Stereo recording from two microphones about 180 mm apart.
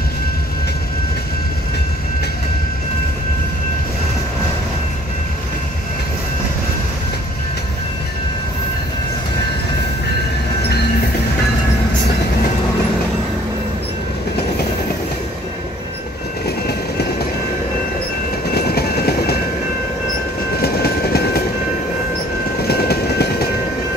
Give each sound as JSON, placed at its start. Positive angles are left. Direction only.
{"t": 18.5, "sound": "train", "side_deg": 60}
{"t": 20.6, "sound": "train", "side_deg": 60}
{"t": 22.7, "sound": "train", "side_deg": 60}